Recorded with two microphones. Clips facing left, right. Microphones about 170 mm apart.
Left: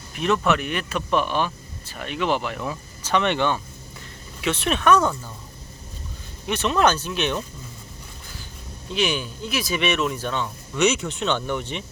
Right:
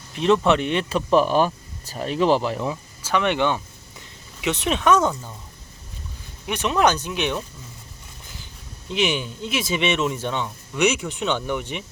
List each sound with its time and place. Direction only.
0.1 s speech: 25° right (ahead or behind)
3.0 s speech: 5° right (ahead or behind)
6.5 s speech: 15° right (ahead or behind)
8.9 s speech: 20° right (ahead or behind)